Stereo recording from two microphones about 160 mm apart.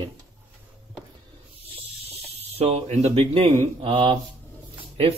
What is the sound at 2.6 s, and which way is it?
Speech, 40° right (ahead or behind).